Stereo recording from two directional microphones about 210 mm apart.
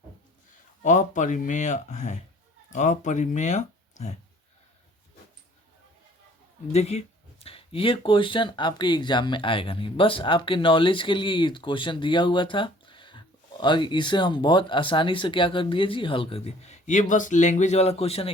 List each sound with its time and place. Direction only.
0.8 s speech: 35° left (ahead or behind)
6.7 s speech: 30° left (ahead or behind)